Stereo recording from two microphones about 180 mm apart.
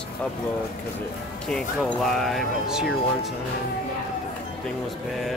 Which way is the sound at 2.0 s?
Centre (ahead or behind).